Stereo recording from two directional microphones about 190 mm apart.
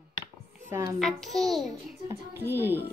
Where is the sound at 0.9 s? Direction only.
Centre (ahead or behind).